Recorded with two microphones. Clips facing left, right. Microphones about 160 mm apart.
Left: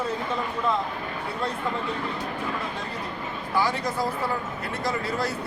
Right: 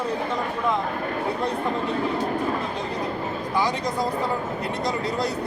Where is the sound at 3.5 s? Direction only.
20° right (ahead or behind).